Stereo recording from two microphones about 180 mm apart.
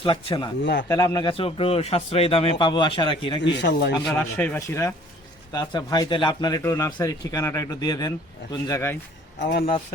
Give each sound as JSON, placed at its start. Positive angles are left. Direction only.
{"t": 0.0, "sound": "a man's voice", "side_deg": 30}
{"t": 0.6, "sound": "a man's voice", "side_deg": 80}
{"t": 0.9, "sound": "a man's voice", "side_deg": 20}
{"t": 3.4, "sound": "speech", "side_deg": 70}
{"t": 4.2, "sound": "a man's voice", "side_deg": 10}
{"t": 9.5, "sound": "speech", "side_deg": 50}